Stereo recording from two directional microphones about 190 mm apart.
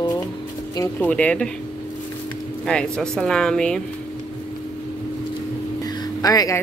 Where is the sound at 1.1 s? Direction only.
5° left (ahead or behind).